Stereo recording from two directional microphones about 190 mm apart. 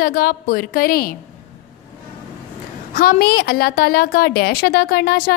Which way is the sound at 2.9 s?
50° left (ahead or behind).